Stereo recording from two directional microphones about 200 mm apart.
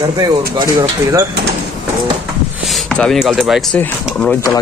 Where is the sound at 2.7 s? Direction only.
Centre (ahead or behind).